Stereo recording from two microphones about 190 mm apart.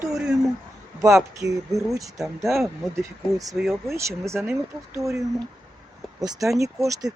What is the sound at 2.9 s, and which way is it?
Speech, 20° right (ahead or behind).